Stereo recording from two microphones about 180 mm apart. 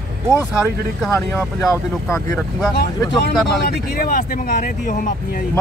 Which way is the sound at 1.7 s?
15° left (ahead or behind).